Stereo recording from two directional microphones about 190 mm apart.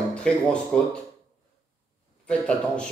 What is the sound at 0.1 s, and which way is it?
Speech, 5° left (ahead or behind).